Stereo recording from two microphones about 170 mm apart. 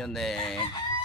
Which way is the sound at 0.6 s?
25° left (ahead or behind).